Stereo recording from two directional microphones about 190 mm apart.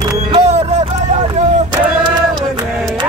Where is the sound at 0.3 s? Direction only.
35° right (ahead or behind).